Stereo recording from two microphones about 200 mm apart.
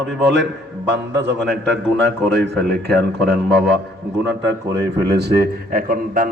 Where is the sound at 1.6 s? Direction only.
60° right (ahead or behind).